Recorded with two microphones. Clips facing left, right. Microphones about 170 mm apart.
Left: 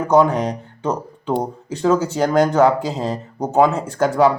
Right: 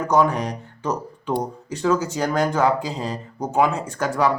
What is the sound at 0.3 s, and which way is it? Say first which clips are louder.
Speech: left 5 dB; 25° left (ahead or behind).